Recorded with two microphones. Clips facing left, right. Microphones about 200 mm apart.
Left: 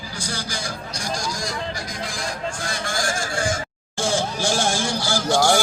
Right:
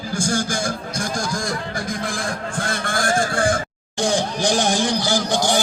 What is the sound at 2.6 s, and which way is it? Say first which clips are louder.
Honk: right 5 dB; 55° right (ahead or behind).